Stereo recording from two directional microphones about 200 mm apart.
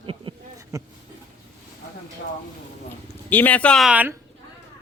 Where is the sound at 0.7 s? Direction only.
15° right (ahead or behind).